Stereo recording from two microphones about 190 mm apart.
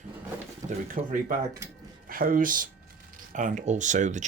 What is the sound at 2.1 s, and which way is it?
Speech, 45° right (ahead or behind).